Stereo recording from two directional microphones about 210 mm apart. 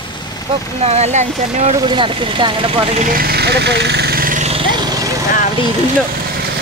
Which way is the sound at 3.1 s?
45° right (ahead or behind).